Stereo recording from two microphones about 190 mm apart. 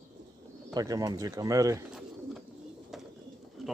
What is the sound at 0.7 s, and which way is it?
Speech, 20° right (ahead or behind).